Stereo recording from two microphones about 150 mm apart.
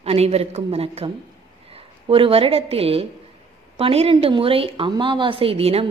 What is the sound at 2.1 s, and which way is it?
A woman's voice, 35° right (ahead or behind).